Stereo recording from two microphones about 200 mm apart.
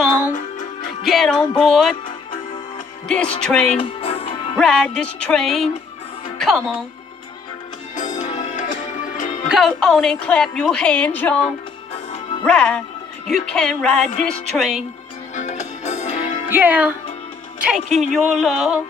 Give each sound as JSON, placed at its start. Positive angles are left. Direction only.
{"t": 1.0, "sound": "a woman's voice", "side_deg": 0}
{"t": 3.3, "sound": "a woman's voice", "side_deg": 5}
{"t": 3.8, "sound": "music", "side_deg": 25}
{"t": 4.6, "sound": "a woman's voice", "side_deg": 5}
{"t": 7.9, "sound": "music", "side_deg": 40}
{"t": 9.5, "sound": "a woman's voice", "side_deg": 0}
{"t": 15.3, "sound": "music", "side_deg": 35}
{"t": 16.4, "sound": "a woman's voice", "side_deg": -10}